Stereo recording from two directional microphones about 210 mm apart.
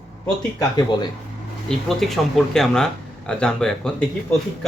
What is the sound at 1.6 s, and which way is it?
Speech, centre (ahead or behind).